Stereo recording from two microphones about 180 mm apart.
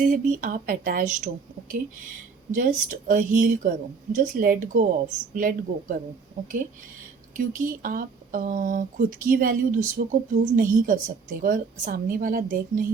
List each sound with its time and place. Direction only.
0.0 s speech: 45° right (ahead or behind)
2.6 s speech: 45° right (ahead or behind)
7.3 s speech: 50° right (ahead or behind)